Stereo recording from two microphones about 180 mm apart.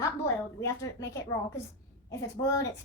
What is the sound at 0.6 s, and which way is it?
A woman's voice, 15° left (ahead or behind).